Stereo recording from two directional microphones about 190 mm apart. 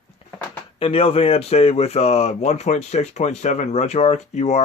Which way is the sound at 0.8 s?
30° left (ahead or behind).